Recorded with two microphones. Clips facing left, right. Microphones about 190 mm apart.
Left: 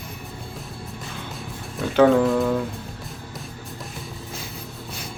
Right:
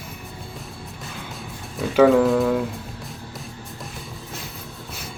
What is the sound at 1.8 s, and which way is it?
Speech, centre (ahead or behind).